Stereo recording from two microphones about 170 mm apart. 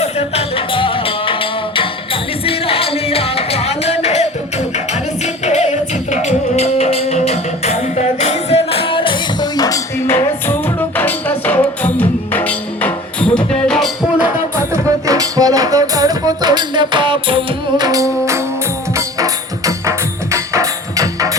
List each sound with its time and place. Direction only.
0.0 s music: 35° left (ahead or behind); by 14.3 s centre (ahead or behind)
14.5 s music: 20° right (ahead or behind)